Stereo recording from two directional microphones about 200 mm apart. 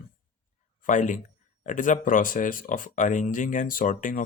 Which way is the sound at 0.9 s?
40° left (ahead or behind).